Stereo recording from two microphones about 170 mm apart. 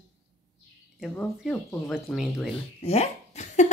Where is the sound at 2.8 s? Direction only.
40° left (ahead or behind).